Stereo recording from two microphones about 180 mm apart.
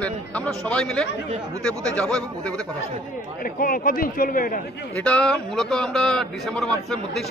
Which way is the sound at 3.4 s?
50° left (ahead or behind).